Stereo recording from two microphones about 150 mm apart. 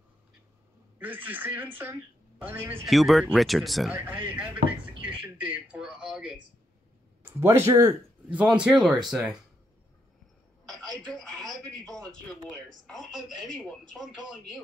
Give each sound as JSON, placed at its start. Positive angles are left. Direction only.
{"t": 0.9, "sound": "speech", "side_deg": -10}
{"t": 2.9, "sound": "speech", "side_deg": 0}
{"t": 3.9, "sound": "speech", "side_deg": -10}
{"t": 8.3, "sound": "speech", "side_deg": -10}
{"t": 10.7, "sound": "speech", "side_deg": 5}